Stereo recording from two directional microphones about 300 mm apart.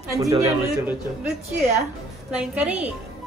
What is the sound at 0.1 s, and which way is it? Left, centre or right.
Speech, centre.